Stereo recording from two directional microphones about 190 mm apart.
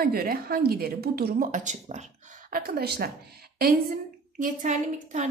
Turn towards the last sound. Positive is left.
turn(degrees=-40)  # may be behind; listen again after turning